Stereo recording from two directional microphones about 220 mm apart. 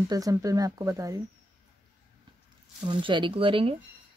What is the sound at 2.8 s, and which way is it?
Speech, 20° right (ahead or behind).